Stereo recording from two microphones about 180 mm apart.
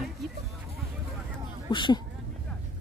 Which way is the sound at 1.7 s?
25° left (ahead or behind).